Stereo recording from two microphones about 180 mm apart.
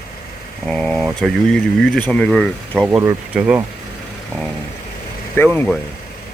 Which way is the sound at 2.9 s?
10° right (ahead or behind).